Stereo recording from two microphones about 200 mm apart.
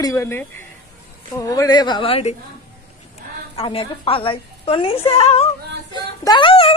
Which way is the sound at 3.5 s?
30° left (ahead or behind).